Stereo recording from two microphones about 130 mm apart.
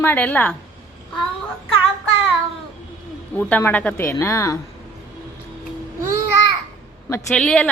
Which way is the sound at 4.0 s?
20° left (ahead or behind).